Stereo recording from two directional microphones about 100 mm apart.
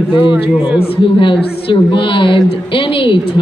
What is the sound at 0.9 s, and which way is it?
Speech, 65° left (ahead or behind).